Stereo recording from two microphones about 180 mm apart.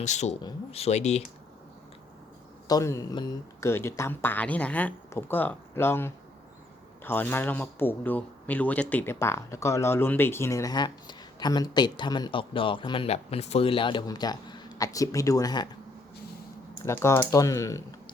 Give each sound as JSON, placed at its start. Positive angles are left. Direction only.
{"t": 0.0, "sound": "speech", "side_deg": 40}
{"t": 2.6, "sound": "speech", "side_deg": 20}
{"t": 16.8, "sound": "speech", "side_deg": 15}